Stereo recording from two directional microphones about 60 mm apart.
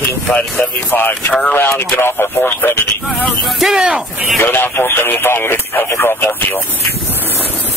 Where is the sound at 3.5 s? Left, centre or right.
Centre.